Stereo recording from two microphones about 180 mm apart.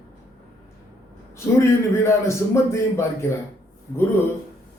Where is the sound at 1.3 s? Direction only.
15° left (ahead or behind).